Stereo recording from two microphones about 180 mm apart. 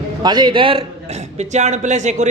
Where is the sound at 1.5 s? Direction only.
40° right (ahead or behind).